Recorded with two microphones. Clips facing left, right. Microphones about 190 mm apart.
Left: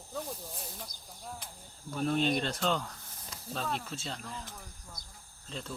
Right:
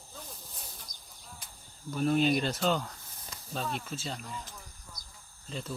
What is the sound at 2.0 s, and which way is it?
Speech, 5° right (ahead or behind).